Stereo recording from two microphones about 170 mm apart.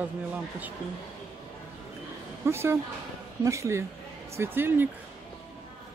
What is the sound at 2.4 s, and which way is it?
Speech, 15° right (ahead or behind).